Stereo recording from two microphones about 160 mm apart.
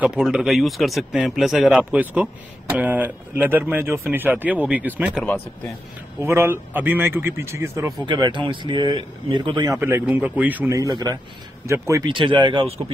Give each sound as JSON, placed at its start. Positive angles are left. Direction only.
{"t": 0.0, "sound": "a man's voice", "side_deg": -5}
{"t": 6.2, "sound": "a man's voice", "side_deg": -15}
{"t": 8.0, "sound": "speech", "side_deg": -30}
{"t": 9.8, "sound": "a man's voice", "side_deg": -15}
{"t": 10.8, "sound": "speech", "side_deg": -25}